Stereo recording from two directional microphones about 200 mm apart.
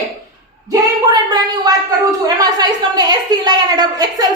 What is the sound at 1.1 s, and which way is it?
A woman's voice, 20° right (ahead or behind).